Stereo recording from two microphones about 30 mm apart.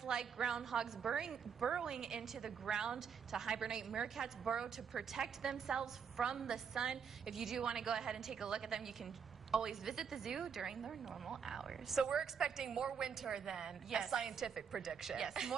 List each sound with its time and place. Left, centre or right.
0.0 s a woman's voice: right
8.8 s a woman's voice: centre
12.0 s a woman's voice: right